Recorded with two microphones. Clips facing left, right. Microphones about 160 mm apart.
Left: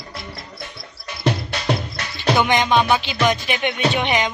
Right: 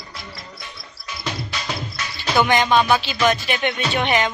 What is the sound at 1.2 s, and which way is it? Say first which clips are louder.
Music: left 7 dB; 60° left (ahead or behind).